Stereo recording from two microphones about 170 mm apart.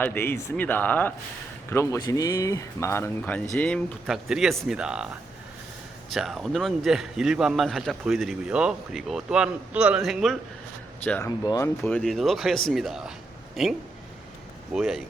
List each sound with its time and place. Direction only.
0.0 s a man's voice: 10° left (ahead or behind)
11.0 s speech: 10° left (ahead or behind)
11.8 s a man's voice: 5° left (ahead or behind)